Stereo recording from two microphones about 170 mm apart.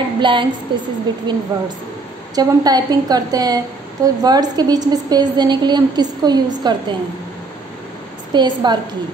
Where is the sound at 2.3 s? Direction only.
25° right (ahead or behind).